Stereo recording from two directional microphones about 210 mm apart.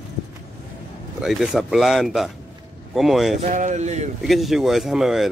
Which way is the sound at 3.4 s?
35° right (ahead or behind).